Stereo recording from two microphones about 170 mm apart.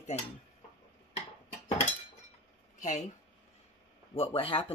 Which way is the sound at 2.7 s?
45° left (ahead or behind).